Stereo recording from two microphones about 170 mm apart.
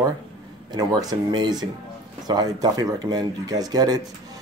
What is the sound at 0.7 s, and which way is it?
Speech, 20° right (ahead or behind).